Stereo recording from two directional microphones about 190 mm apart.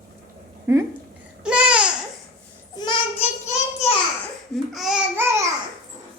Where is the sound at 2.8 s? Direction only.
25° left (ahead or behind).